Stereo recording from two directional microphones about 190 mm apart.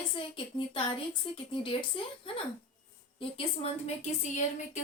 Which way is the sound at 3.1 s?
30° left (ahead or behind).